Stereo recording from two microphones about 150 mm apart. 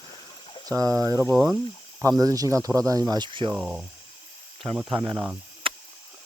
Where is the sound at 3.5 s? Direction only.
5° right (ahead or behind).